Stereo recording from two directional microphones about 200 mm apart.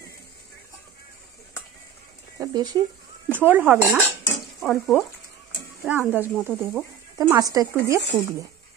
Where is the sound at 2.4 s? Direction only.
20° right (ahead or behind).